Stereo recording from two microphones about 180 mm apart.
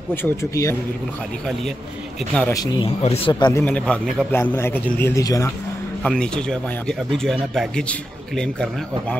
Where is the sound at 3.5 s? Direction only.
10° left (ahead or behind).